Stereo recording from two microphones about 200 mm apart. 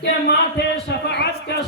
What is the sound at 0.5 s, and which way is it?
A man's voice, 55° left (ahead or behind).